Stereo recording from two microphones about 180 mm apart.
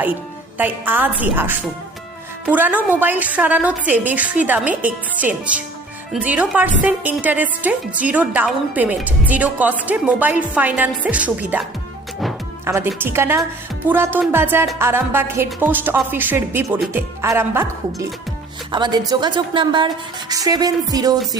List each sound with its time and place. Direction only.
0.6 s a woman's voice: 10° right (ahead or behind)
12.6 s a woman's voice: 15° right (ahead or behind)
18.7 s a woman's voice: 25° right (ahead or behind)